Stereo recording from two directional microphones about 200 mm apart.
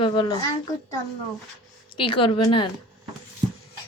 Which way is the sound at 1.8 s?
25° left (ahead or behind).